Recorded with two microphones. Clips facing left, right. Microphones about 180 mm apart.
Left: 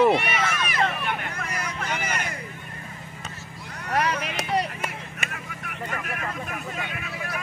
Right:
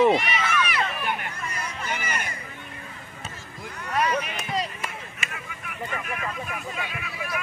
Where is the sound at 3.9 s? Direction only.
80° left; by 5.2 s 65° left (ahead or behind).